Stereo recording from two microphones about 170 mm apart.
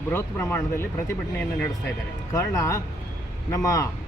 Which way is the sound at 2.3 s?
15° left (ahead or behind).